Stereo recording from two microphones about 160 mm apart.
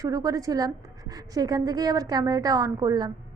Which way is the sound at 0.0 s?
20° right (ahead or behind).